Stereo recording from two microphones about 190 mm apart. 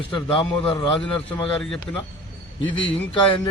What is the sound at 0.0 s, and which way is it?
Speech, 25° left (ahead or behind).